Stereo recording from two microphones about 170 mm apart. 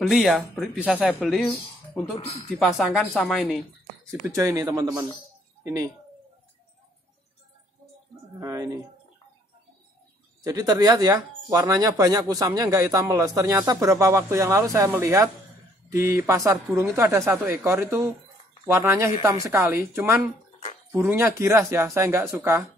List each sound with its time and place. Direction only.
0.0 s speech: centre (ahead or behind)
2.6 s speech: centre (ahead or behind)
4.1 s speech: 20° right (ahead or behind)
8.4 s speech: 15° right (ahead or behind)
10.4 s speech: 20° right (ahead or behind)